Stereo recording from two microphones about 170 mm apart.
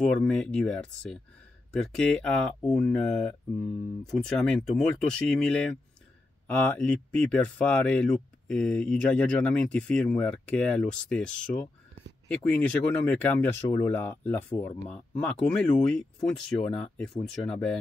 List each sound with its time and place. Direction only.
0.2 s speech: 5° left (ahead or behind)